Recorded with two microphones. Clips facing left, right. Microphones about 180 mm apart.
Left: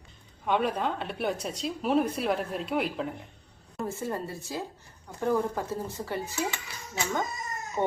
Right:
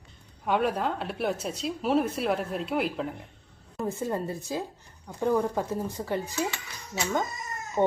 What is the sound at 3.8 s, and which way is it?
Speech, 15° right (ahead or behind).